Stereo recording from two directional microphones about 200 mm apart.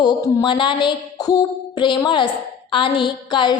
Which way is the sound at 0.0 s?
20° left (ahead or behind).